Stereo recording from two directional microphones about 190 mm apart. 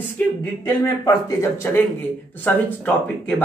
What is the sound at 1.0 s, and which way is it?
Speech, 15° left (ahead or behind).